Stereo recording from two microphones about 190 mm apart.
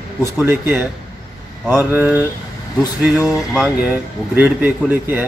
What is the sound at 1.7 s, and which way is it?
Speech, 10° right (ahead or behind).